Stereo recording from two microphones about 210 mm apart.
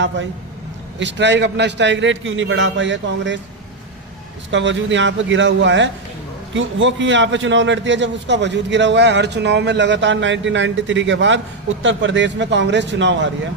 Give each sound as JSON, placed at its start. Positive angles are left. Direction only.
{"t": 0.9, "sound": "a man's voice", "side_deg": -60}
{"t": 4.5, "sound": "a man's voice", "side_deg": -60}